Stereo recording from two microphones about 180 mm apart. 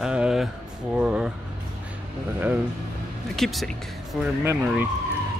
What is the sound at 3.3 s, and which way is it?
Speech, centre (ahead or behind).